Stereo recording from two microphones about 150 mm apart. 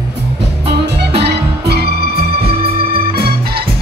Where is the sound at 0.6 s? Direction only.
90° right.